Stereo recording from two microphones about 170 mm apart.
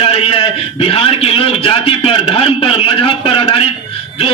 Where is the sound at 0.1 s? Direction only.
35° left (ahead or behind).